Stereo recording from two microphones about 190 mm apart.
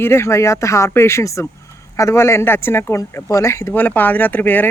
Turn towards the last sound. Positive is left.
turn(degrees=10)  # may be behind; listen again after turning